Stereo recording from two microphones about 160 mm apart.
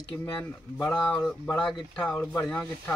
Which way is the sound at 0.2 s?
15° left (ahead or behind).